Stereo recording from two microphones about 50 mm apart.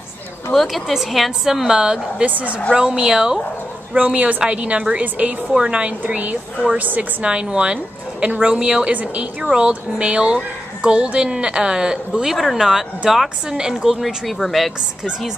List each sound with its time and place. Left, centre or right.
0.5 s a woman's voice: centre
2.2 s a woman's voice: right
2.7 s a woman's voice: centre
3.9 s a woman's voice: right
5.5 s a woman's voice: centre